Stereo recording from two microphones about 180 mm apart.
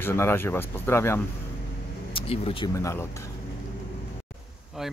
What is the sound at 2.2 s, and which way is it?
Speech, 30° left (ahead or behind).